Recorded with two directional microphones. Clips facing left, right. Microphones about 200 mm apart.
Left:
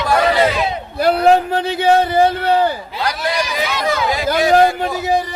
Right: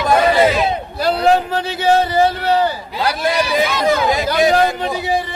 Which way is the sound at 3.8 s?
20° right (ahead or behind).